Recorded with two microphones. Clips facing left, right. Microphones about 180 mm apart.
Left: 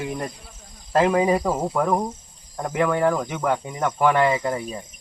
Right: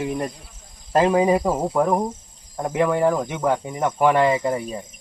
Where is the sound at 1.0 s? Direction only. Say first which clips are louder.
Right 1 dB; 5° right (ahead or behind).